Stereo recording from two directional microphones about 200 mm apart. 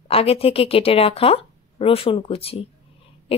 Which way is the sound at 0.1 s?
30° left (ahead or behind).